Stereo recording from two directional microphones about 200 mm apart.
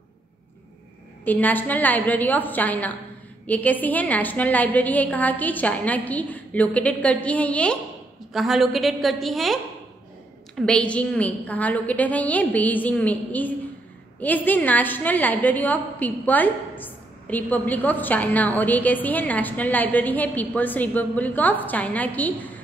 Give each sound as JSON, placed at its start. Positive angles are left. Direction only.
{"t": 1.2, "sound": "a woman's voice", "side_deg": 10}